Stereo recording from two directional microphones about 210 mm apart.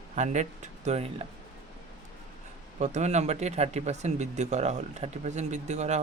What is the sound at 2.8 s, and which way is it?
Speech, 35° right (ahead or behind).